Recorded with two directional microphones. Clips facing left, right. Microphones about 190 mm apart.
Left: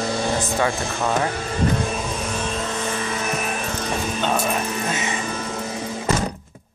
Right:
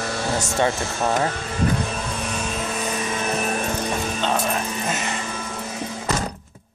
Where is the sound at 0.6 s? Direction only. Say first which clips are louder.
Right 1 dB; 20° right (ahead or behind).